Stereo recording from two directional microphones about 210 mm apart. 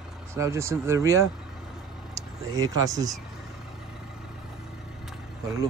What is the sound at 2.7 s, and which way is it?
Speech, 15° right (ahead or behind).